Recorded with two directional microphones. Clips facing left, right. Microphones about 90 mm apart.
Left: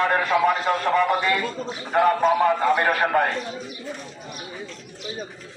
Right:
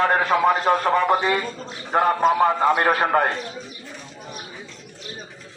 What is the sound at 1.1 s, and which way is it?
A man's voice, 25° right (ahead or behind).